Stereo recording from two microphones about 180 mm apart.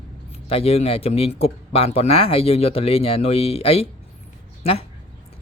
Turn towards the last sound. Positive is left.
turn(degrees=35)  # may be behind; listen again after turning